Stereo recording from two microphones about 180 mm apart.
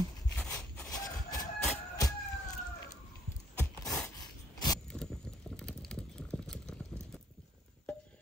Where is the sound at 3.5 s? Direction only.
5° left (ahead or behind).